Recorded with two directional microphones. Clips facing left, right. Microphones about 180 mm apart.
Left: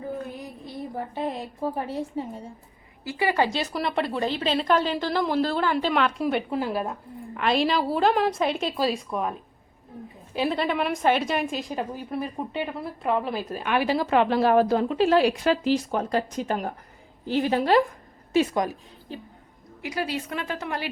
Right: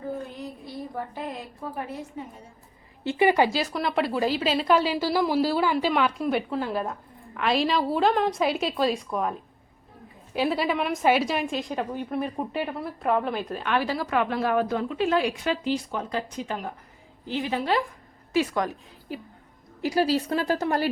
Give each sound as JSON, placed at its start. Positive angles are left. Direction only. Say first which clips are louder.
{"t": 0.9, "sound": "a woman's voice", "louder": "left 5 dB", "side_deg": 25}
{"t": 3.0, "sound": "a woman's voice", "louder": "right 3 dB", "side_deg": -25}
{"t": 3.5, "sound": "a woman's voice", "louder": "right 1 dB", "side_deg": 0}
{"t": 10.3, "sound": "a woman's voice", "louder": "even", "side_deg": -5}
{"t": 13.9, "sound": "a woman's voice", "louder": "left 4 dB", "side_deg": 25}
{"t": 18.3, "sound": "speech", "louder": "left 2 dB", "side_deg": 15}
{"t": 19.8, "sound": "a woman's voice", "louder": "right 6 dB", "side_deg": -35}